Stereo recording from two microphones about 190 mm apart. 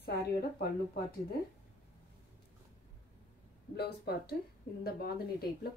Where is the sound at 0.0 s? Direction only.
55° left (ahead or behind).